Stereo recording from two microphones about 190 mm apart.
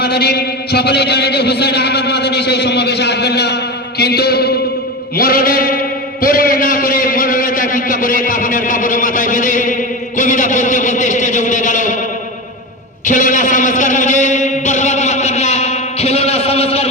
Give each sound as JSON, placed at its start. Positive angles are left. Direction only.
{"t": 0.0, "sound": "music", "side_deg": 55}
{"t": 5.1, "sound": "a sound", "side_deg": 50}
{"t": 10.2, "sound": "music", "side_deg": 40}
{"t": 13.1, "sound": "music", "side_deg": 40}